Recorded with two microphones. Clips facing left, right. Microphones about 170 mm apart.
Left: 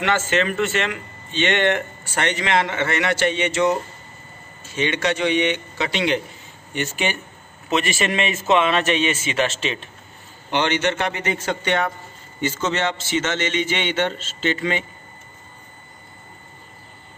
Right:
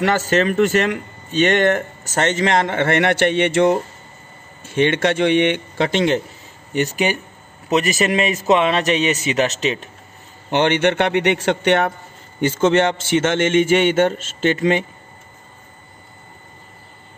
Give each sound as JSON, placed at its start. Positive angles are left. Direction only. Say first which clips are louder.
{"t": 0.0, "sound": "a man's voice", "louder": "right 4 dB", "side_deg": -40}
{"t": 10.5, "sound": "a man's voice", "louder": "right 5 dB", "side_deg": -55}
{"t": 12.4, "sound": "speech", "louder": "right 8 dB", "side_deg": -50}